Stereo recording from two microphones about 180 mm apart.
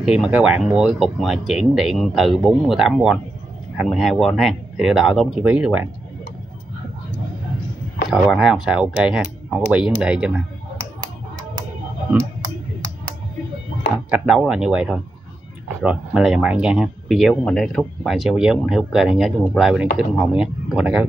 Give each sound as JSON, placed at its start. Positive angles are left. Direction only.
{"t": 0.0, "sound": "speech", "side_deg": -5}
{"t": 8.3, "sound": "speech", "side_deg": -5}
{"t": 12.1, "sound": "a sound", "side_deg": -15}
{"t": 14.1, "sound": "speech", "side_deg": -5}